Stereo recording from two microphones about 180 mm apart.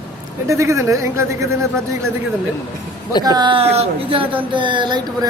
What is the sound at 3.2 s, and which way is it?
Speech, 25° right (ahead or behind).